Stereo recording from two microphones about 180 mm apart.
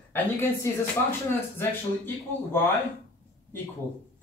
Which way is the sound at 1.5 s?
10° left (ahead or behind).